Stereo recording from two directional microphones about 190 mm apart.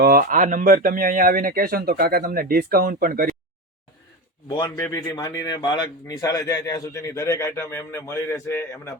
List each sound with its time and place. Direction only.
0.0 s speech: 50° right (ahead or behind)
4.4 s a man's voice: 20° left (ahead or behind)